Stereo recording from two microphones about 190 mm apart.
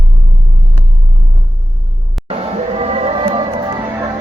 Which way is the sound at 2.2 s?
30° right (ahead or behind).